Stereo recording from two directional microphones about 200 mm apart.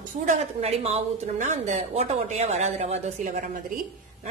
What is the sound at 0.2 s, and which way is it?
Speech, 35° right (ahead or behind).